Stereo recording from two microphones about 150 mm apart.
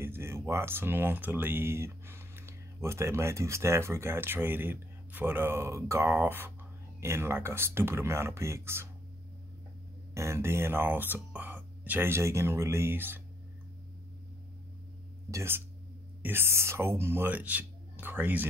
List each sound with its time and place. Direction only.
0.0 s speech: 15° right (ahead or behind)
10.1 s speech: 20° right (ahead or behind)
15.3 s speech: 15° right (ahead or behind)